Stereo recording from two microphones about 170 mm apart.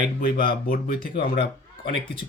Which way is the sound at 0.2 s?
55° left (ahead or behind).